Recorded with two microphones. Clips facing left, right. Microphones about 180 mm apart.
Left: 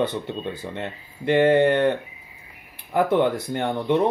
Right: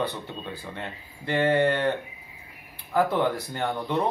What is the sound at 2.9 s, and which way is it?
Speech, 20° left (ahead or behind).